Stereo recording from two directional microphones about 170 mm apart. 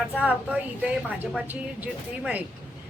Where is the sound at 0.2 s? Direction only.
5° right (ahead or behind).